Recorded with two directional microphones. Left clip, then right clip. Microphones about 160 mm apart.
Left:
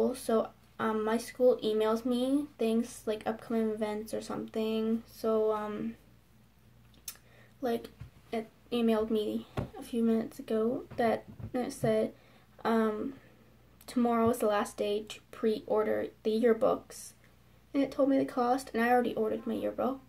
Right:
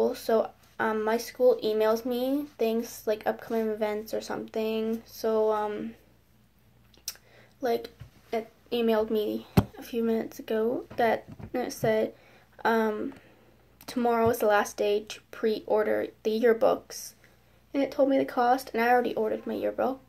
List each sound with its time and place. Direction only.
0.0 s speech: 15° left (ahead or behind)
7.6 s a woman's voice: 15° left (ahead or behind)